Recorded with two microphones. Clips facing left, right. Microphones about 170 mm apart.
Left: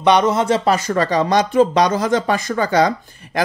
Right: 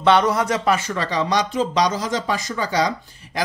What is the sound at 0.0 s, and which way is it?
Speech, 20° left (ahead or behind).